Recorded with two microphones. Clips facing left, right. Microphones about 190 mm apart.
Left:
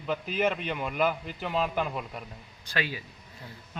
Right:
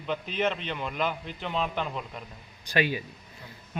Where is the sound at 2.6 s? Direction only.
15° right (ahead or behind).